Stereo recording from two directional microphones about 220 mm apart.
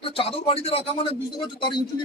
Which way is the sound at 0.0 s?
25° left (ahead or behind).